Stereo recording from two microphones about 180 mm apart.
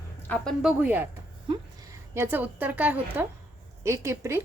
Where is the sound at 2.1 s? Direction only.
10° right (ahead or behind).